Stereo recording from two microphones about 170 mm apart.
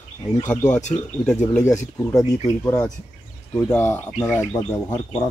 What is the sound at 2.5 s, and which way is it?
Speech, 15° left (ahead or behind).